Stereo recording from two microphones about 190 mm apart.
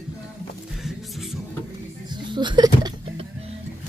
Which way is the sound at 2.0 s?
25° right (ahead or behind).